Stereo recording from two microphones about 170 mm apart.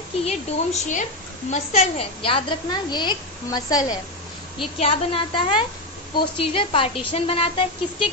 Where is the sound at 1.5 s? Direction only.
40° left (ahead or behind).